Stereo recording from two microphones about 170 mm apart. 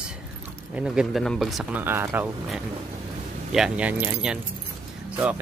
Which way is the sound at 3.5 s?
5° right (ahead or behind).